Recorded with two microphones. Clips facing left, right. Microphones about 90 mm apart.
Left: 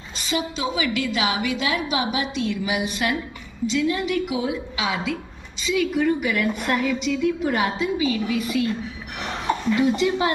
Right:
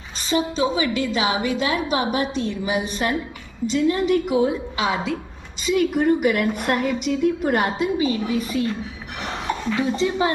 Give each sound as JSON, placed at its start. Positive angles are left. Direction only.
{"t": 0.2, "sound": "a woman's voice", "side_deg": -35}
{"t": 9.9, "sound": "speech", "side_deg": -30}